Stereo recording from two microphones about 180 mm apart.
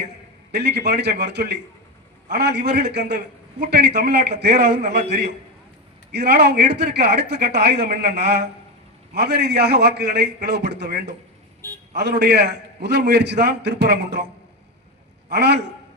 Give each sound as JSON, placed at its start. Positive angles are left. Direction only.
{"t": 0.5, "sound": "a man's voice", "side_deg": -65}
{"t": 6.1, "sound": "a man's voice", "side_deg": -65}
{"t": 15.3, "sound": "a man's voice", "side_deg": -70}